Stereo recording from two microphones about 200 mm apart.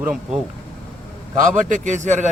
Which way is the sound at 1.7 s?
40° right (ahead or behind).